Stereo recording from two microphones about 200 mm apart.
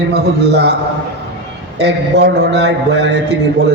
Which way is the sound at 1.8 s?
60° right (ahead or behind).